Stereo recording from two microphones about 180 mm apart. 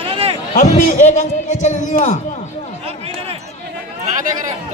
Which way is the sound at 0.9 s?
40° left (ahead or behind).